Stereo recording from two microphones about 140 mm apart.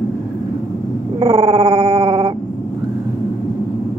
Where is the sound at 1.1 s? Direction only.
50° right (ahead or behind).